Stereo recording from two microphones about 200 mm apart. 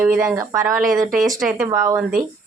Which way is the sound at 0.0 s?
10° right (ahead or behind).